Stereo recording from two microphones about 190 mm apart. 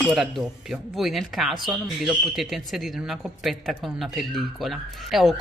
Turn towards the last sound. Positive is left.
turn(degrees=0)  # may be behind; listen again after turning